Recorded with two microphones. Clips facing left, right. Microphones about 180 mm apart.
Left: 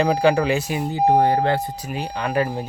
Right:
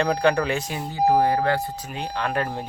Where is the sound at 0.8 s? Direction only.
25° left (ahead or behind); by 2.6 s 5° left (ahead or behind).